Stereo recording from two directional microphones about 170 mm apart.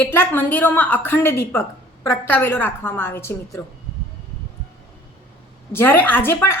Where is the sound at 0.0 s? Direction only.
15° left (ahead or behind).